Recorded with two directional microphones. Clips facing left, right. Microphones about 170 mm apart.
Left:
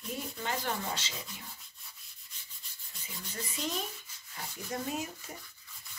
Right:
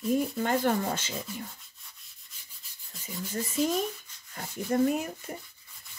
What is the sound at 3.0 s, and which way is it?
Speech, 45° right (ahead or behind).